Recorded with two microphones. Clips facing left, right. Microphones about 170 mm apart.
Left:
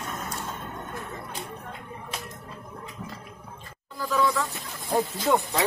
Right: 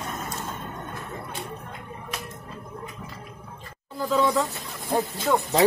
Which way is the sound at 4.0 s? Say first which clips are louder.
Right 3 dB; 25° right (ahead or behind).